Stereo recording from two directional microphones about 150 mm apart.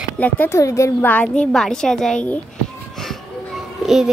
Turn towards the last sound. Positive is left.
turn(degrees=0)  # may be behind; listen again after turning